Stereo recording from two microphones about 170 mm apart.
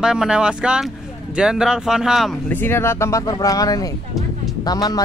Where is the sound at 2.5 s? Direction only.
15° left (ahead or behind).